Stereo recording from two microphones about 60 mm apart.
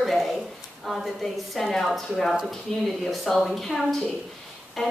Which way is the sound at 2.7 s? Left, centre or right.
Centre.